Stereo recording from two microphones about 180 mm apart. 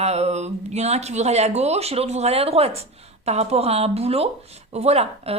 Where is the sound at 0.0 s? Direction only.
35° right (ahead or behind).